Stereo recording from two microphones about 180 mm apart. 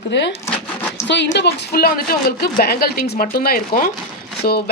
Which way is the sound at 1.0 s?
75° left (ahead or behind).